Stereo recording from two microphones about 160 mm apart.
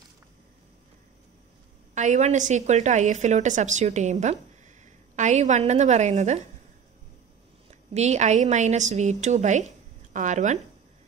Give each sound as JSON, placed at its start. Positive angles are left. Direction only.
{"t": 2.0, "sound": "a woman's voice", "side_deg": -50}
{"t": 7.9, "sound": "a woman's voice", "side_deg": -45}